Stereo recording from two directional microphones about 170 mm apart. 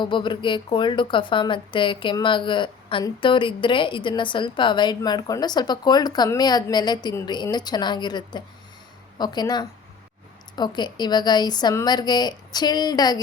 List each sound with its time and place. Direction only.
0.0 s a woman's voice: 30° left (ahead or behind)